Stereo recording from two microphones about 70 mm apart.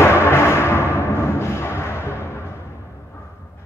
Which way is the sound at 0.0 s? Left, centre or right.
Left.